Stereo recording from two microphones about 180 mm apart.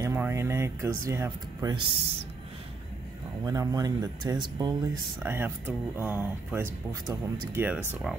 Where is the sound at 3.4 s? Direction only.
20° right (ahead or behind).